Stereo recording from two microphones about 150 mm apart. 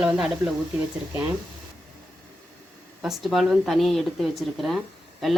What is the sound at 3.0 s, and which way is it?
Speech, centre (ahead or behind).